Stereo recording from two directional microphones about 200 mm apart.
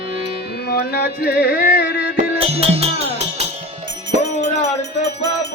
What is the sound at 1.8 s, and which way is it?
Music, 55° left (ahead or behind).